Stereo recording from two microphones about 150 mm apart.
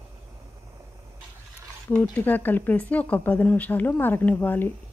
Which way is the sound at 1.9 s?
10° left (ahead or behind).